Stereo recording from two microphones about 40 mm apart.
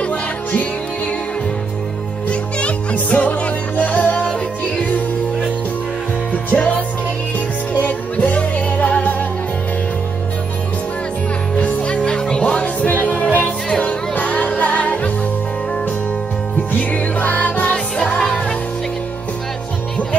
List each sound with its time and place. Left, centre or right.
0.0 s music: left
2.2 s music: left
6.5 s music: left
7.8 s music: left
11.5 s music: left
16.7 s music: left
17.6 s music: left